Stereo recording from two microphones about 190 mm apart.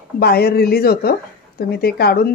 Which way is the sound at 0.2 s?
55° left (ahead or behind).